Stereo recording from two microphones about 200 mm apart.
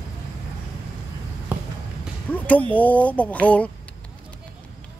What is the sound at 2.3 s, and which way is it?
Speech, 5° left (ahead or behind).